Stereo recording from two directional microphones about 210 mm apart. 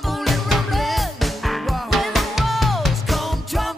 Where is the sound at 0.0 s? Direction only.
Centre (ahead or behind).